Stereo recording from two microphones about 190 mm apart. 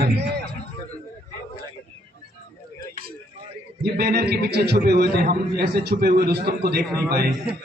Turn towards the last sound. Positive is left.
turn(degrees=-55)  # may be behind; listen again after turning